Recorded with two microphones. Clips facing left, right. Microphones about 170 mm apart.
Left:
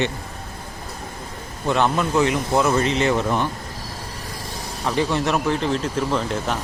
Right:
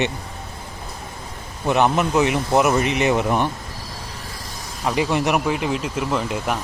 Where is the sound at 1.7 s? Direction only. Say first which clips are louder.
Right 2 dB; 15° right (ahead or behind).